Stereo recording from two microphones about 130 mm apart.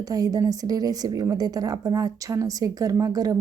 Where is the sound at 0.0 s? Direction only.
30° right (ahead or behind).